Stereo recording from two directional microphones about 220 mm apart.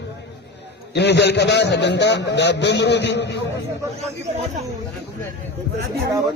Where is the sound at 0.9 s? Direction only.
50° left (ahead or behind).